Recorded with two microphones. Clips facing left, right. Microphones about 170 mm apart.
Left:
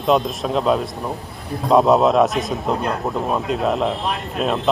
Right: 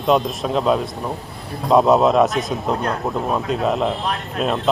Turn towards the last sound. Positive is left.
turn(degrees=0)  # may be behind; listen again after turning